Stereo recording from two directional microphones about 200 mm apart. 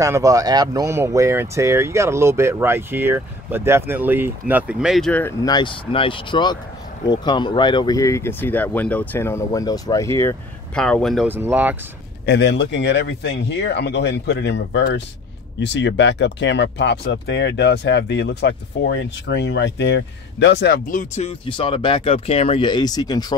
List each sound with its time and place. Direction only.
0.0 s speech: 15° right (ahead or behind); by 5.3 s 5° left (ahead or behind)
5.4 s speech: 20° left (ahead or behind); by 11.2 s 5° left (ahead or behind)
11.2 s speech: 10° right (ahead or behind)
12.3 s speech: 60° left (ahead or behind); by 23.2 s 20° left (ahead or behind)